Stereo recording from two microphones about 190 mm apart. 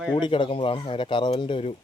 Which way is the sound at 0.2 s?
25° left (ahead or behind).